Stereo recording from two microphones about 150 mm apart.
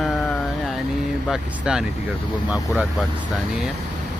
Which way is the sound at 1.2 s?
5° right (ahead or behind).